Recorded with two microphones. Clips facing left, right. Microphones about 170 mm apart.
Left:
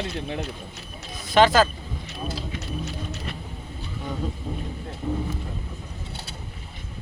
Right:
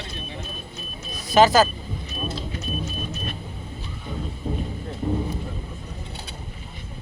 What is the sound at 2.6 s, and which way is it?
Vehicle, 75° left (ahead or behind).